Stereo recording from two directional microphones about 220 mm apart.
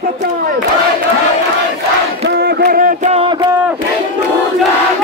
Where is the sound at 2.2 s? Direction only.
45° right (ahead or behind); by 3.3 s 30° right (ahead or behind).